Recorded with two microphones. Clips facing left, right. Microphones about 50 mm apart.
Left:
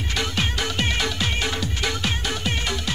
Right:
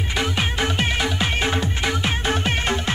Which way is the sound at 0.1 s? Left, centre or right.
Centre.